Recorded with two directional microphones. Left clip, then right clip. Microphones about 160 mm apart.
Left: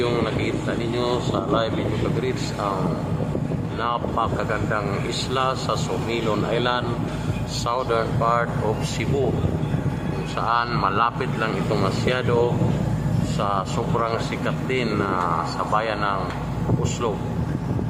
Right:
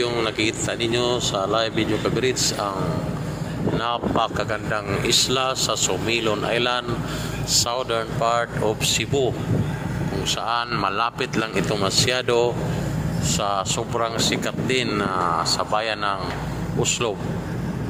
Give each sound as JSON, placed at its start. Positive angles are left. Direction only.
{"t": 0.9, "sound": "speech", "side_deg": -15}
{"t": 5.3, "sound": "speech", "side_deg": -15}
{"t": 10.5, "sound": "speech", "side_deg": -20}
{"t": 14.7, "sound": "speech", "side_deg": -20}